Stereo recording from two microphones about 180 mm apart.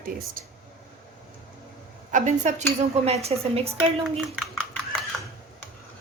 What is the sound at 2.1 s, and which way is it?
A woman's voice, 40° right (ahead or behind).